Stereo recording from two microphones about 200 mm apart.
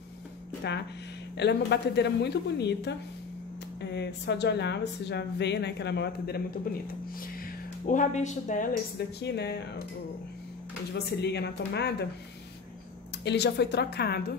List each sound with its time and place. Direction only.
0.6 s speech: 60° left (ahead or behind)
7.8 s a woman's voice: 40° left (ahead or behind)
8.9 s speech: 55° left (ahead or behind)
10.9 s speech: 55° left (ahead or behind)
13.2 s speech: 60° left (ahead or behind)